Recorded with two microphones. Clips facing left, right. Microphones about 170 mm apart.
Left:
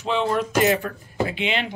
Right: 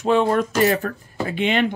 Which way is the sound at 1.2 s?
45° right (ahead or behind).